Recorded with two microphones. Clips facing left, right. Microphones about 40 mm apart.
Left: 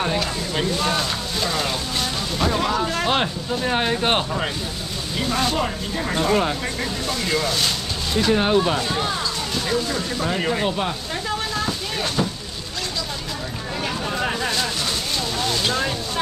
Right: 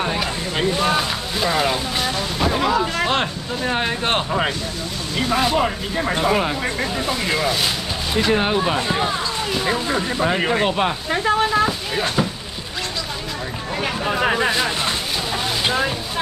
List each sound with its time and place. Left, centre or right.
0.1 s a sound: right
5.1 s speech: centre
14.0 s speech: right